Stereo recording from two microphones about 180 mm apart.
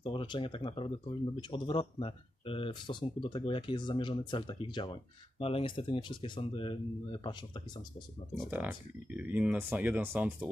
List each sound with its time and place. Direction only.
0.0 s speech: 25° left (ahead or behind)
8.5 s speech: 10° right (ahead or behind)